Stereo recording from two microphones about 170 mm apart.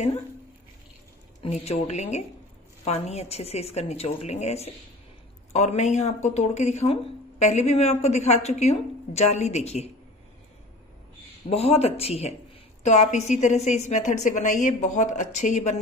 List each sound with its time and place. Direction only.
1.4 s speech: 35° left (ahead or behind)
11.4 s a woman's voice: 35° left (ahead or behind)